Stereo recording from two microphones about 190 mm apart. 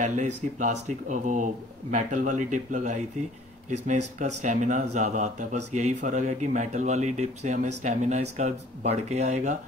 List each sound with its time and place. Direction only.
0.0 s speech: 40° right (ahead or behind)